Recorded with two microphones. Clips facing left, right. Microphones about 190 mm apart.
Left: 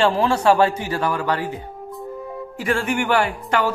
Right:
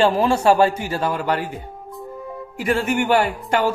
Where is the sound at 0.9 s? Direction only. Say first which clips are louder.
Even; 25° right (ahead or behind).